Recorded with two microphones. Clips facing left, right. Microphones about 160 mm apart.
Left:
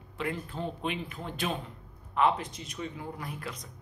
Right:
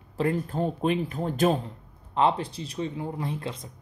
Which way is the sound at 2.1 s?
30° right (ahead or behind).